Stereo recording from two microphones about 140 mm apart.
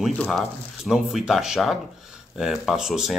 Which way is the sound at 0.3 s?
5° right (ahead or behind).